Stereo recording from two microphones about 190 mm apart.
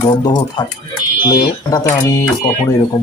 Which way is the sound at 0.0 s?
20° left (ahead or behind).